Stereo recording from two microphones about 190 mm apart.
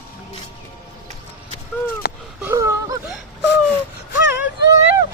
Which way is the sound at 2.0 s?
60° left (ahead or behind).